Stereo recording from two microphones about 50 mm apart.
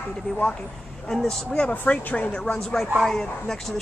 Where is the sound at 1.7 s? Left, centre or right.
Left.